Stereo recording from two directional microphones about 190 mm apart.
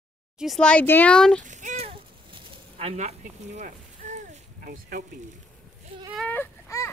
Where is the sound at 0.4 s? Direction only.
Centre (ahead or behind).